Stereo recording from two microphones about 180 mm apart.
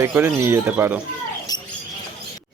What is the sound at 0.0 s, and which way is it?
Speech, 15° right (ahead or behind).